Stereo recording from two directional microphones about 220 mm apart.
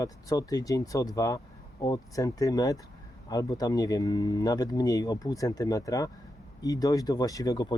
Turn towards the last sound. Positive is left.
turn(degrees=15)  # may be behind; listen again after turning